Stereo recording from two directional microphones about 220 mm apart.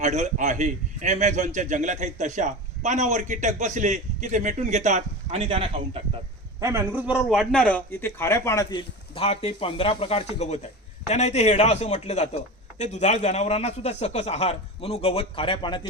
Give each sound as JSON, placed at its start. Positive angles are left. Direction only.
{"t": 0.0, "sound": "a man's voice", "side_deg": -30}
{"t": 6.6, "sound": "a man's voice", "side_deg": -10}
{"t": 9.1, "sound": "a man's voice", "side_deg": 25}